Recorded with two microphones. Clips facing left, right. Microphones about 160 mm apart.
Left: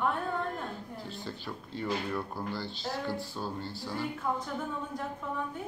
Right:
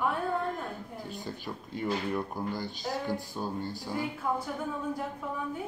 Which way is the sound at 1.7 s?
15° right (ahead or behind).